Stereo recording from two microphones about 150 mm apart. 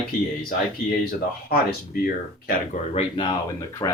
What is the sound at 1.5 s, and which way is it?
Speech, 90° left.